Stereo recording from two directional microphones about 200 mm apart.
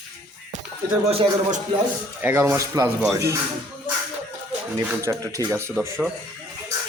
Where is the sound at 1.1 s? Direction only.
30° right (ahead or behind).